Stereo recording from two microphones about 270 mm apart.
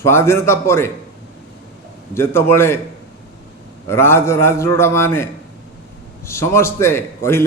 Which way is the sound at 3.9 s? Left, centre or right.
Centre.